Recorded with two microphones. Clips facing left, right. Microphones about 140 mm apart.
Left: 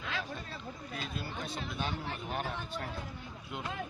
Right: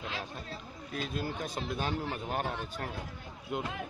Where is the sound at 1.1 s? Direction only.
45° right (ahead or behind).